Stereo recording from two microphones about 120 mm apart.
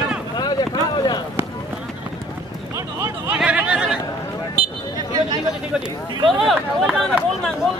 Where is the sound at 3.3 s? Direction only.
10° right (ahead or behind).